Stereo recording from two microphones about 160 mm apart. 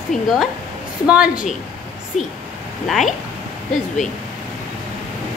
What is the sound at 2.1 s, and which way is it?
Speech, 45° left (ahead or behind).